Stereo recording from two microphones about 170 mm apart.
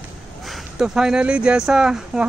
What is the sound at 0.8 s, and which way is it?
Speech, 5° right (ahead or behind).